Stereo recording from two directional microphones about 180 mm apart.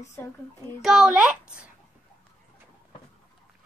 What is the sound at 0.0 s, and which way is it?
Speech, 15° left (ahead or behind).